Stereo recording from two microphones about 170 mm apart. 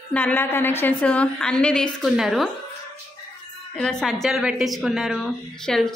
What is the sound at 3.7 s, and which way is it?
A woman's voice, 5° left (ahead or behind).